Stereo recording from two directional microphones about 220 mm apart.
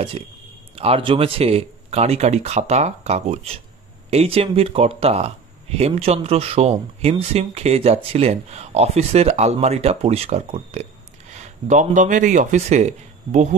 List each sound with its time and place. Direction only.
0.7 s speech: 25° right (ahead or behind)